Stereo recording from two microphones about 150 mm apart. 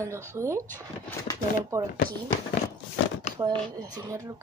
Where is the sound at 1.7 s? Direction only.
20° right (ahead or behind).